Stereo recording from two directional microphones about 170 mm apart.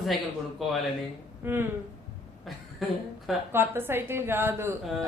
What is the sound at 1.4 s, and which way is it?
Speech, 10° right (ahead or behind).